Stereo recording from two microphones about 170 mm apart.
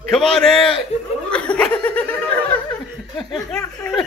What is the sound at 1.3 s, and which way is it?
Laughter, 5° left (ahead or behind).